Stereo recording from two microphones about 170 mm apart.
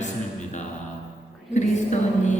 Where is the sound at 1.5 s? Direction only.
45° left (ahead or behind).